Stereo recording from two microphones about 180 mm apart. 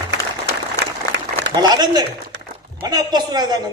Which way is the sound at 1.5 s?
20° right (ahead or behind).